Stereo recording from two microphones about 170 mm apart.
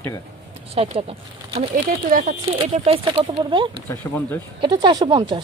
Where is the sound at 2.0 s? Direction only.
50° right (ahead or behind).